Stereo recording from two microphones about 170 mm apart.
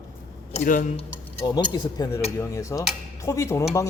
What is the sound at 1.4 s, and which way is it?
Speech, 25° left (ahead or behind).